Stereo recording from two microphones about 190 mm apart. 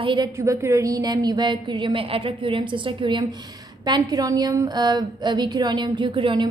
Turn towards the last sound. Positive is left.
turn(degrees=-25)  # may be behind; listen again after turning